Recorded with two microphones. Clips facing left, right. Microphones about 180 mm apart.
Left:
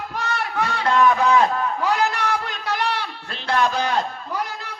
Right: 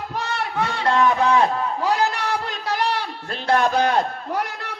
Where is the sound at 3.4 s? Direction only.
55° right (ahead or behind).